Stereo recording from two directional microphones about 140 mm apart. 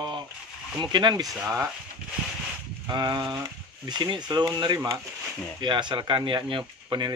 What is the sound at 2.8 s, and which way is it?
Speech, 30° right (ahead or behind).